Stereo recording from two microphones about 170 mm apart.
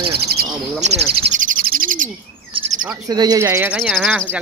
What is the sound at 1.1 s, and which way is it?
Speech, 35° right (ahead or behind).